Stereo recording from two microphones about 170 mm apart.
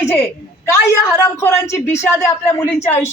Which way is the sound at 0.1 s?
15° left (ahead or behind).